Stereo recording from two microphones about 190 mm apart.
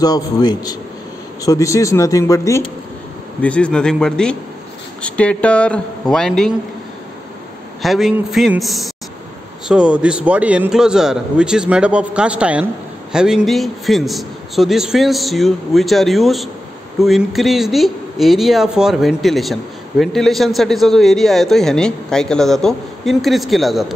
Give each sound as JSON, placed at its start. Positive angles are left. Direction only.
{"t": 0.0, "sound": "a man's voice", "side_deg": 20}
{"t": 3.4, "sound": "speech", "side_deg": 5}
{"t": 7.8, "sound": "speech", "side_deg": 0}